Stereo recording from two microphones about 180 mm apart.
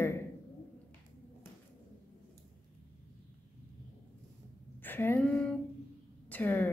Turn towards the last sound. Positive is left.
turn(degrees=10)  # may be behind; listen again after turning